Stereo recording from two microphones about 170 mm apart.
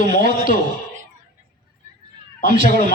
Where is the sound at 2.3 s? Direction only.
50° left (ahead or behind).